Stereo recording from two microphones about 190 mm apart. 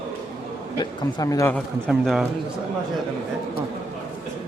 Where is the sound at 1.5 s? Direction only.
Centre (ahead or behind).